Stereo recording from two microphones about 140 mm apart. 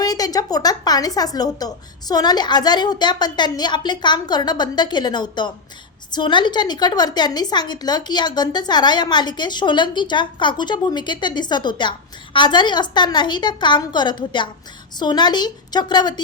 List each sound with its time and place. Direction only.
0.0 s a woman's voice: 25° left (ahead or behind)